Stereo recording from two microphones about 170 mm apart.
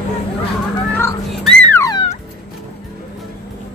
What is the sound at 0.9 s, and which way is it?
Music, 10° left (ahead or behind).